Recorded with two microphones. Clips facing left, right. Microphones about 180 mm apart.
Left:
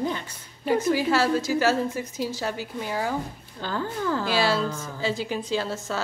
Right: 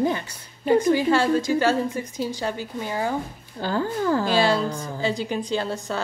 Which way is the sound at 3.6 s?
35° right (ahead or behind).